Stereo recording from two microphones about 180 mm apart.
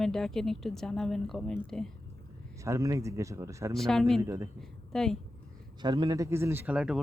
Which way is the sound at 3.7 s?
Centre (ahead or behind).